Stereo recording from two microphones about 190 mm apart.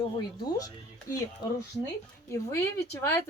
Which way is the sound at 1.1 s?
15° left (ahead or behind).